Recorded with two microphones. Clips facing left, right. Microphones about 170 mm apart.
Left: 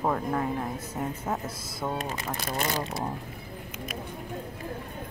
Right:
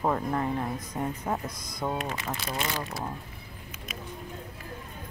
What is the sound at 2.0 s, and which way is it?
Speech, 40° left (ahead or behind).